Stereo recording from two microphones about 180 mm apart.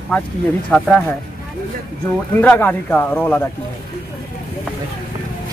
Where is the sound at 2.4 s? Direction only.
10° left (ahead or behind).